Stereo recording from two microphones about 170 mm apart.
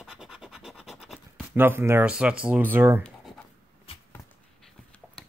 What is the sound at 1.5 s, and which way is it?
Speech, 15° right (ahead or behind).